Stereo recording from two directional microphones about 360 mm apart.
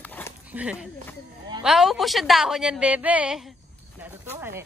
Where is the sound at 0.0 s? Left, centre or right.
Centre.